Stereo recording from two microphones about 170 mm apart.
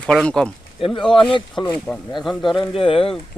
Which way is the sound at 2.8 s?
30° left (ahead or behind).